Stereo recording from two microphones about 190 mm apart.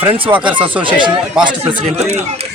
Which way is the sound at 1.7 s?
35° right (ahead or behind).